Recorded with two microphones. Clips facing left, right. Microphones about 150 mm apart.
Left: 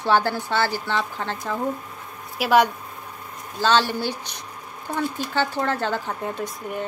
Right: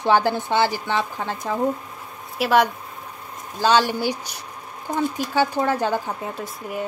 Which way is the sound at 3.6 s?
15° right (ahead or behind).